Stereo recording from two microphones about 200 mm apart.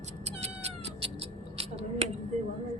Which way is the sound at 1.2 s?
30° right (ahead or behind).